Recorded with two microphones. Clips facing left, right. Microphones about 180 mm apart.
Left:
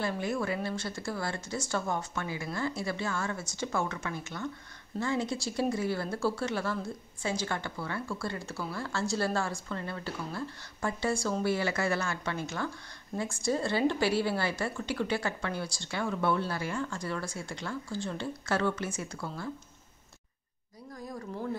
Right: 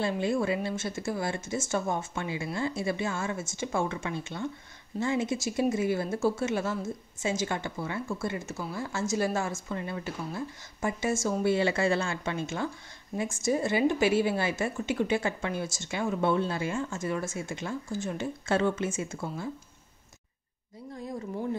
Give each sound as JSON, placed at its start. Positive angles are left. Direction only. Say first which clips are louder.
{"t": 0.1, "sound": "speech", "louder": "right 4 dB", "side_deg": -25}
{"t": 20.9, "sound": "speech", "louder": "right 4 dB", "side_deg": -25}